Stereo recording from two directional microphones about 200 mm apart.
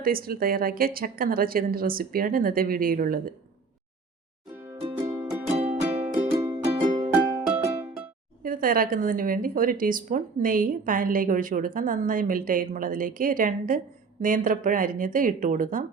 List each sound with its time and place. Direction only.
0.0 s a woman's voice: 45° right (ahead or behind)
4.9 s music: 15° right (ahead or behind)
5.5 s music: 30° right (ahead or behind)
6.1 s music: 15° right (ahead or behind)
6.7 s music: 35° right (ahead or behind)
7.4 s music: 10° right (ahead or behind)
8.4 s a woman's voice: 45° right (ahead or behind)